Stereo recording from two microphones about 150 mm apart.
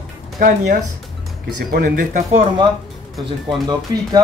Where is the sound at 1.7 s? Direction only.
70° right (ahead or behind).